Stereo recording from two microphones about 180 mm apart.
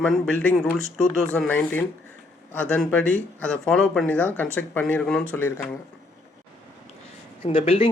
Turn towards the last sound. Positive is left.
turn(degrees=30)  # may be behind; listen again after turning